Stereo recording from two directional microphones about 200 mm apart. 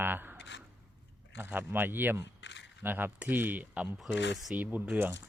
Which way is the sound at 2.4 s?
65° left (ahead or behind).